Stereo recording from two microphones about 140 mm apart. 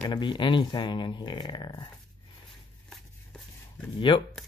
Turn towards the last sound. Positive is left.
turn(degrees=35)  # may be behind; listen again after turning